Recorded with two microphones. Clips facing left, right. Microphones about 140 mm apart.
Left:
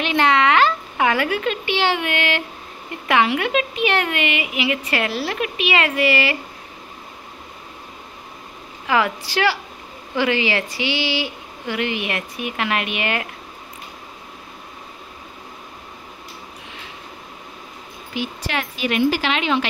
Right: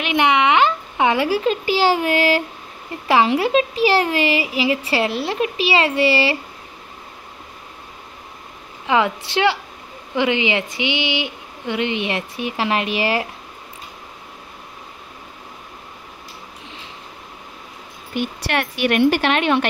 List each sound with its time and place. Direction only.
0.0 s a woman's voice: 15° right (ahead or behind)
8.8 s speech: 25° right (ahead or behind)
18.1 s a woman's voice: 55° right (ahead or behind)